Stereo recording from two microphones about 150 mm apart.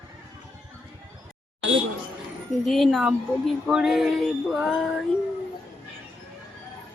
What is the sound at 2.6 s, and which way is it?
Female singing, centre (ahead or behind).